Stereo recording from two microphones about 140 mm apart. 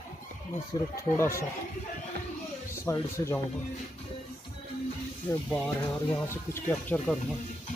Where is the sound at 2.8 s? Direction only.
20° left (ahead or behind).